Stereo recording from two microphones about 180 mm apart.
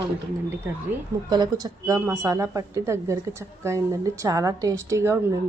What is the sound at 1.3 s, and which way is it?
Speech, 20° right (ahead or behind).